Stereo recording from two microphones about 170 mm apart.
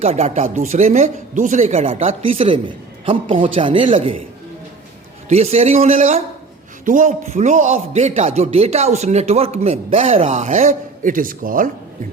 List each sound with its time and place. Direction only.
0.0 s a man's voice: 35° right (ahead or behind)
2.0 s a man's voice: 35° right (ahead or behind)
5.3 s a man's voice: 40° right (ahead or behind)